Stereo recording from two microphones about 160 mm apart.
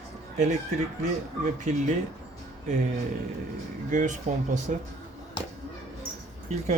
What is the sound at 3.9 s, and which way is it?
Speech, 50° right (ahead or behind).